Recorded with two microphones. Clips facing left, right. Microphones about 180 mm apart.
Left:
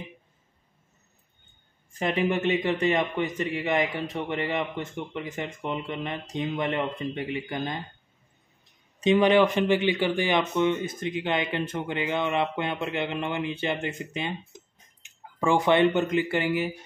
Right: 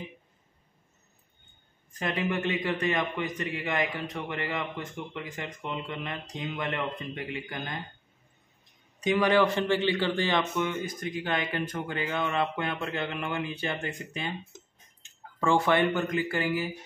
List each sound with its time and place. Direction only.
2.0 s speech: 25° left (ahead or behind)
9.0 s speech: 20° left (ahead or behind)